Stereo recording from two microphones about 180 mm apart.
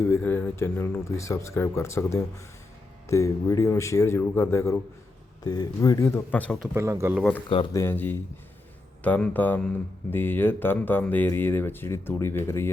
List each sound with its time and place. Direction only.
0.0 s speech: 15° left (ahead or behind)
6.7 s speech: 15° right (ahead or behind)
7.2 s speech: 5° left (ahead or behind)